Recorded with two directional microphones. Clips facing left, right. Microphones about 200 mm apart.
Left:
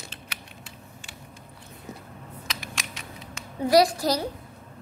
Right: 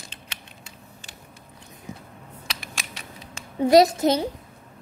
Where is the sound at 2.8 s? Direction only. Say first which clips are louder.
Even; 30° right (ahead or behind).